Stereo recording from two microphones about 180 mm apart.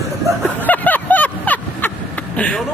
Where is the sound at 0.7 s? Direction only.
10° left (ahead or behind).